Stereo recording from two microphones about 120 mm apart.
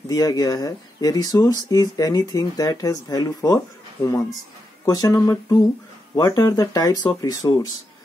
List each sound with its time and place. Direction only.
0.1 s speech: 30° left (ahead or behind)